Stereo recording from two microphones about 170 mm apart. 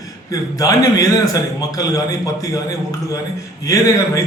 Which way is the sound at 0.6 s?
20° left (ahead or behind).